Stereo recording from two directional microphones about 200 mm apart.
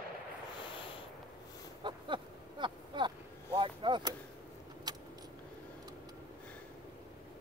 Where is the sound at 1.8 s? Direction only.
25° right (ahead or behind).